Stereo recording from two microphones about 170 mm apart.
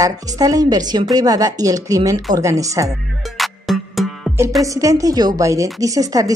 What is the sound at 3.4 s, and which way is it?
Music, centre (ahead or behind).